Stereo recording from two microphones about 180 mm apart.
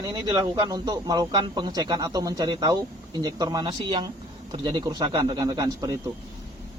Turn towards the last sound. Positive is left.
turn(degrees=-20)  # may be behind; listen again after turning